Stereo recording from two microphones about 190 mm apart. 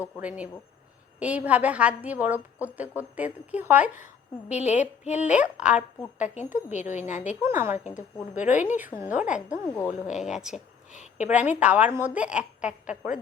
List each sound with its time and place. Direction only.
0.2 s a woman's voice: 5° right (ahead or behind)
4.7 s a woman's voice: 40° left (ahead or behind)
5.2 s a woman's voice: 5° right (ahead or behind)
6.1 s a woman's voice: 40° left (ahead or behind)
7.2 s a woman's voice: 10° right (ahead or behind)
9.6 s a woman's voice: 10° left (ahead or behind)
10.1 s speech: centre (ahead or behind)
10.9 s a sound: 40° left (ahead or behind)
11.3 s a woman's voice: 5° right (ahead or behind)